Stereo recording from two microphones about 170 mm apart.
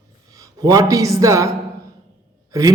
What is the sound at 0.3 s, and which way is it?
A man's voice, 20° right (ahead or behind).